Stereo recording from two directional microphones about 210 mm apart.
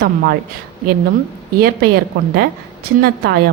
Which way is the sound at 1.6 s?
45° right (ahead or behind).